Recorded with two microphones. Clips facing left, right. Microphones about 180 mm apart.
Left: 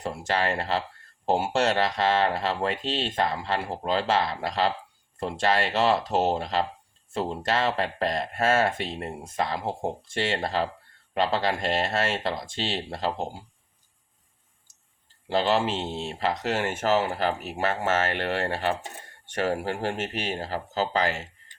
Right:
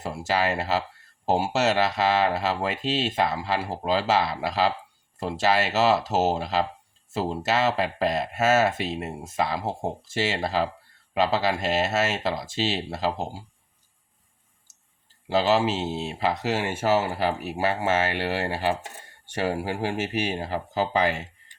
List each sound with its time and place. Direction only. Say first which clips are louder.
0.0 s speech: right 2 dB; 5° right (ahead or behind)
15.3 s speech: right 2 dB; 5° right (ahead or behind)